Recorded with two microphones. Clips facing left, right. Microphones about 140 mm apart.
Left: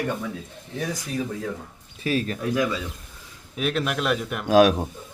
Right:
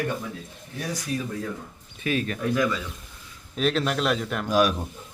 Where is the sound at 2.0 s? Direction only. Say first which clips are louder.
Left 2 dB; 35° left (ahead or behind).